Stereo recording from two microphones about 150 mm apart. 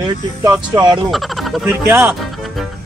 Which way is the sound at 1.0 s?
Centre (ahead or behind).